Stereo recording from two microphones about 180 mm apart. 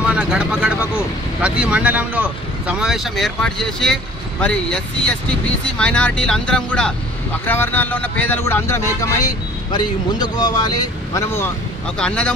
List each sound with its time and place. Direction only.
0.0 s speech: 5° right (ahead or behind)